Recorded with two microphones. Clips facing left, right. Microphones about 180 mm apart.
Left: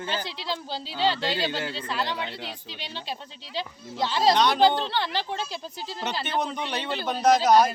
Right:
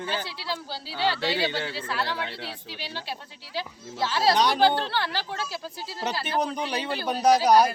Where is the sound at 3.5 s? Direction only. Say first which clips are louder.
Even; 10° right (ahead or behind).